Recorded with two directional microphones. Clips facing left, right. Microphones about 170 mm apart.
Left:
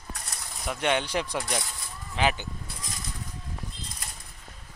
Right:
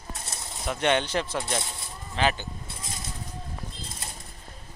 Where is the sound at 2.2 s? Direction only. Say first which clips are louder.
Even; 10° left (ahead or behind).